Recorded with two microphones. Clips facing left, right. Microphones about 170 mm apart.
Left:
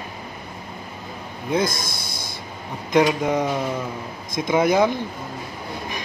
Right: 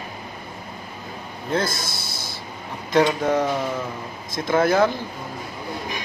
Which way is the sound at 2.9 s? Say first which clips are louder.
Even; 10° left (ahead or behind).